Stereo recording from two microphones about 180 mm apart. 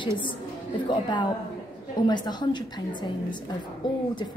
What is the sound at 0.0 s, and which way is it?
A woman's voice, 25° left (ahead or behind).